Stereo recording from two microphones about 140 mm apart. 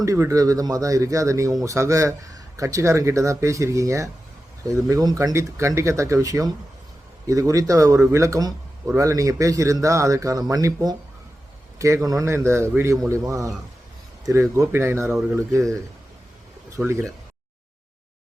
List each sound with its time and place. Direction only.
0.0 s speech: 20° right (ahead or behind)
12.0 s speech: 20° right (ahead or behind)
14.5 s speech: 20° right (ahead or behind)
16.7 s speech: 20° right (ahead or behind)